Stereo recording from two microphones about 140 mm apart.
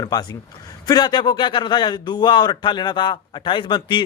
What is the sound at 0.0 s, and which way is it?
A man's voice, 30° left (ahead or behind).